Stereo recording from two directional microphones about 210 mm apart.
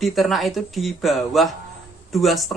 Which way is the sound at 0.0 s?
Centre (ahead or behind).